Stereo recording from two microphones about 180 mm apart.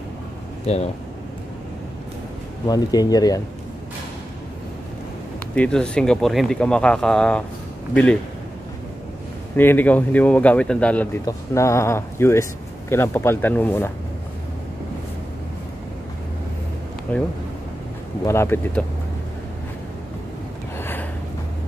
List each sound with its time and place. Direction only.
2.6 s speech: 20° left (ahead or behind)
5.5 s speech: 5° left (ahead or behind)
9.6 s speech: 10° left (ahead or behind)
17.1 s speech: 10° left (ahead or behind)
20.7 s a sound: 10° left (ahead or behind)